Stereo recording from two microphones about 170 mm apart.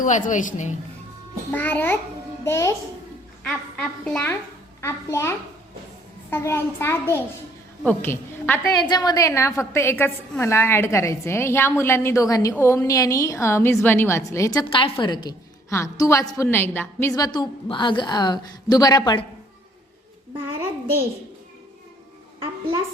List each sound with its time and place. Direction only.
0.0 s a woman's voice: 50° left (ahead or behind)
1.5 s a woman's voice: 10° left (ahead or behind)
3.4 s a woman's voice: 5° left (ahead or behind)
8.8 s a woman's voice: 25° left (ahead or behind)